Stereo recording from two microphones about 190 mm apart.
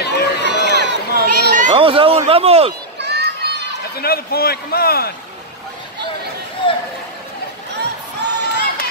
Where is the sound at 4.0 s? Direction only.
55° left (ahead or behind).